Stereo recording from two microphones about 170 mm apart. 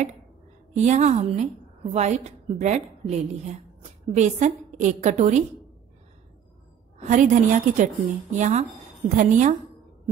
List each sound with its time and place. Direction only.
0.7 s a woman's voice: 40° right (ahead or behind)
7.0 s a woman's voice: 45° right (ahead or behind)